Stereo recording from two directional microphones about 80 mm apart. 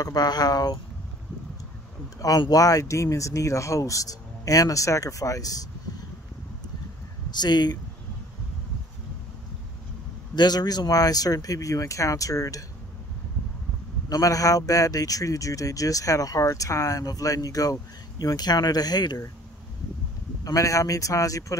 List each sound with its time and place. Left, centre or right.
0.0 s speech: left
2.1 s speech: left
7.2 s speech: left
10.3 s speech: left
14.0 s speech: left
20.4 s speech: left